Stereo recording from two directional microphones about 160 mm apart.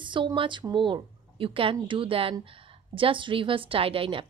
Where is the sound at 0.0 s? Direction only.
30° right (ahead or behind).